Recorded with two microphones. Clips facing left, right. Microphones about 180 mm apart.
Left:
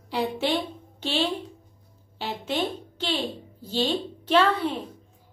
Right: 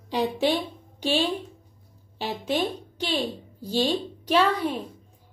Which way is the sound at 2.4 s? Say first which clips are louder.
Right 2 dB; 15° right (ahead or behind).